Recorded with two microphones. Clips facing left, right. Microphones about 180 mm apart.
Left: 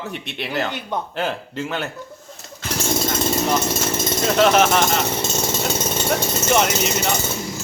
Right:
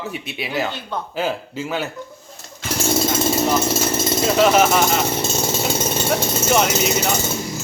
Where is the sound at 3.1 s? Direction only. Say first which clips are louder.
Right 1 dB; 5° right (ahead or behind).